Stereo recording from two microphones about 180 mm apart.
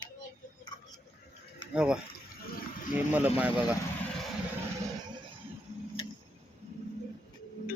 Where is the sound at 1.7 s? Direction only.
5° right (ahead or behind).